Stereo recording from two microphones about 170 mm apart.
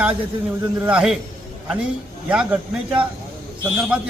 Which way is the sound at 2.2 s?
5° right (ahead or behind).